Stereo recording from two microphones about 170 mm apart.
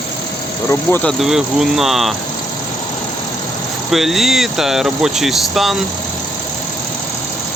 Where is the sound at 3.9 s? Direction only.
Centre (ahead or behind).